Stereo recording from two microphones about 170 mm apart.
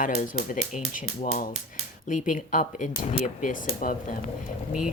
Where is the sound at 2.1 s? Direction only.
50° left (ahead or behind).